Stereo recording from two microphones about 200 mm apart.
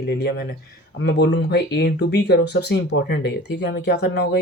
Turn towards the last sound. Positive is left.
turn(degrees=55)  # may be behind; listen again after turning